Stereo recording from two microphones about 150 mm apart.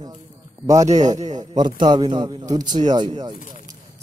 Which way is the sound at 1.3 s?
30° right (ahead or behind).